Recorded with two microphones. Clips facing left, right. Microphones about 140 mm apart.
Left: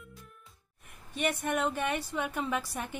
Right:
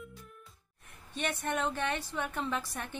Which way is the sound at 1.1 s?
10° left (ahead or behind).